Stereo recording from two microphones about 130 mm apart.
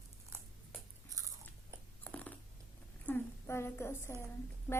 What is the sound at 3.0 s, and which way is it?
A woman's voice, 15° left (ahead or behind).